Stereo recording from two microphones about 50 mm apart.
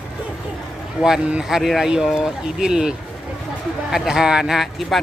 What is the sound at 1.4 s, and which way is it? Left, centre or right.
Speech, centre.